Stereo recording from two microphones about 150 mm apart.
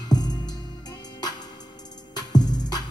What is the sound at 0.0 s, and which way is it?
Music, 25° left (ahead or behind).